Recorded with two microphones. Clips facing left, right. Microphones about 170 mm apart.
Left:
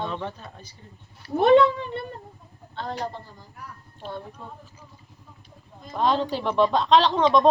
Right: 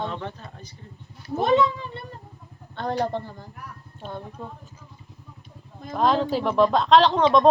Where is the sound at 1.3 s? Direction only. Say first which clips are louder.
Left 4 dB; 60° left (ahead or behind).